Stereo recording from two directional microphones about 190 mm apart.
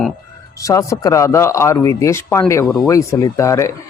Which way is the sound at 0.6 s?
15° left (ahead or behind).